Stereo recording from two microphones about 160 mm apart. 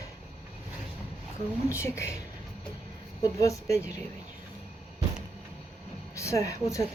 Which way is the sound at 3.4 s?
20° left (ahead or behind).